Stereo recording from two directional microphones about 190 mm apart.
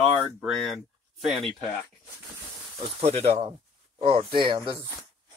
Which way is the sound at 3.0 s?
35° right (ahead or behind).